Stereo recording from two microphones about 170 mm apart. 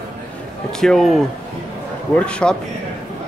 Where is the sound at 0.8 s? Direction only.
Centre (ahead or behind).